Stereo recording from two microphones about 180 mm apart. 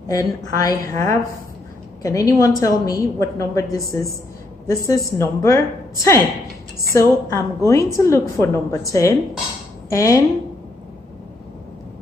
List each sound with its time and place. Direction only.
0.1 s a woman's voice: 20° left (ahead or behind)